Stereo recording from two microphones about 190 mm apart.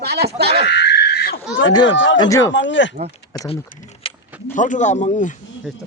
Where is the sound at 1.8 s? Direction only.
80° left.